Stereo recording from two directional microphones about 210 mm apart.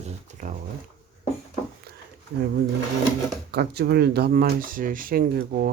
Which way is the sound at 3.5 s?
50° right (ahead or behind).